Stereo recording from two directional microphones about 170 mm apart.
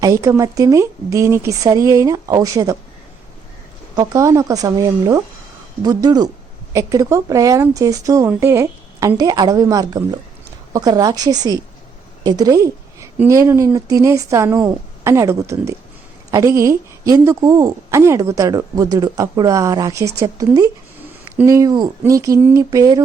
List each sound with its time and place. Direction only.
0.0 s a woman's voice: 20° right (ahead or behind)
3.9 s a woman's voice: 20° right (ahead or behind)